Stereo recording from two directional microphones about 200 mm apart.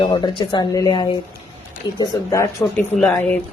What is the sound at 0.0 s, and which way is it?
A woman's voice, 25° left (ahead or behind).